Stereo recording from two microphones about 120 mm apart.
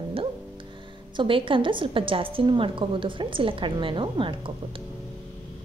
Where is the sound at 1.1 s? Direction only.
45° right (ahead or behind).